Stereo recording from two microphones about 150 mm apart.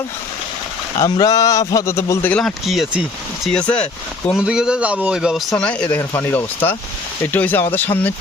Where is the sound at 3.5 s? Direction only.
5° left (ahead or behind).